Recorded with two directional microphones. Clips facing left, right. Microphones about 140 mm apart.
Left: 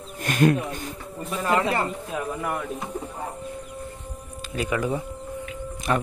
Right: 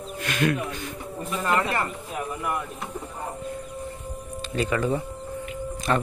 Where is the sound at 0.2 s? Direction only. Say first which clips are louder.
Left 4 dB; 40° left (ahead or behind).